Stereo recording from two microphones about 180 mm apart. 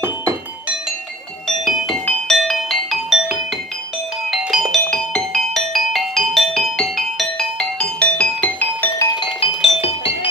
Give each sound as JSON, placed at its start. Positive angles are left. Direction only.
{"t": 1.7, "sound": "music", "side_deg": 0}
{"t": 4.3, "sound": "music", "side_deg": 0}
{"t": 9.2, "sound": "music", "side_deg": 30}